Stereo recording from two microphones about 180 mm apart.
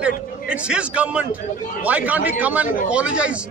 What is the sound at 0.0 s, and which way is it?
A man's voice, 5° right (ahead or behind).